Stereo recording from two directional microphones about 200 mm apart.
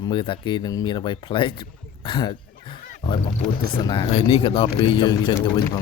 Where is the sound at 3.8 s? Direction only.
20° left (ahead or behind).